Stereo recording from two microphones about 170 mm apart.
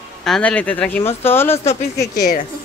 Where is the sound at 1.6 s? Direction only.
40° left (ahead or behind).